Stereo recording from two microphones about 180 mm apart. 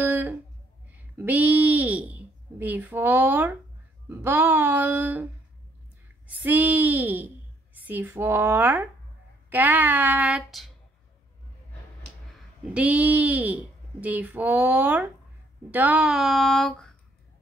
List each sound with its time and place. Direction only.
0.0 s a sound: 10° right (ahead or behind)
4.1 s speech: 10° right (ahead or behind)
12.7 s speech: 5° right (ahead or behind)